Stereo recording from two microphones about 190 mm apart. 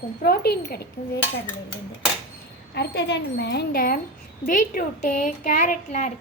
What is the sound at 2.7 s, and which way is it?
A woman's voice, 60° left (ahead or behind).